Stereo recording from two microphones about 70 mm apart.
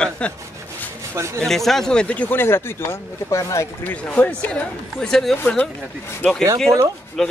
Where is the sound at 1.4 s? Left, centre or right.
Centre.